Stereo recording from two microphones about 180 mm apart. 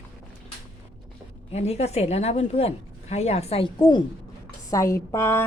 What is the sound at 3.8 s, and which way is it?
A woman's voice, 25° left (ahead or behind).